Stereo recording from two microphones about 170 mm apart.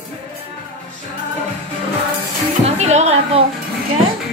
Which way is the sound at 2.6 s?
40° right (ahead or behind).